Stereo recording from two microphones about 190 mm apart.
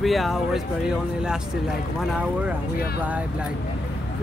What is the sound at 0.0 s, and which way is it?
Speech, centre (ahead or behind).